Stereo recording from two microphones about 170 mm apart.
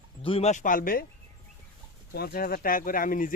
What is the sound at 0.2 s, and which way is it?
Speech, 35° left (ahead or behind).